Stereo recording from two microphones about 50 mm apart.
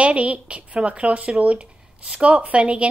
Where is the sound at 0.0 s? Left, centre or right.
Right.